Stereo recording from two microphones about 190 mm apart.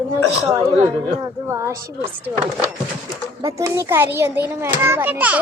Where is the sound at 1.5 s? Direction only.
15° right (ahead or behind).